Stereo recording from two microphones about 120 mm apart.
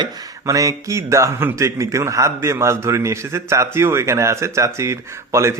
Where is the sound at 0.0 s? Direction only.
30° right (ahead or behind).